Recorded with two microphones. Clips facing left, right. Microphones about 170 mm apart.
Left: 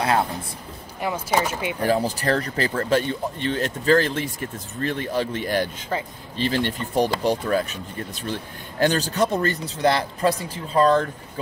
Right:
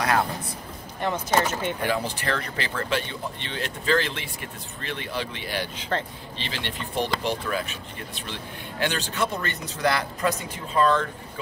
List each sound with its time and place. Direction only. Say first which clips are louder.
1.0 s speech: left 1 dB; 10° left (ahead or behind)
1.8 s a man's voice: left 5 dB; 40° left (ahead or behind)